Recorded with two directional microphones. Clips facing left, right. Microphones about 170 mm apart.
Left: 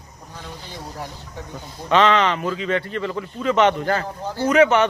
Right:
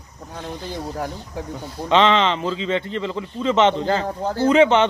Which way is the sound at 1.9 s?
20° right (ahead or behind).